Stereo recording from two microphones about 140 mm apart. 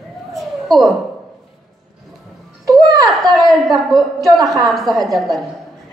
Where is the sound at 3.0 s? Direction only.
Centre (ahead or behind).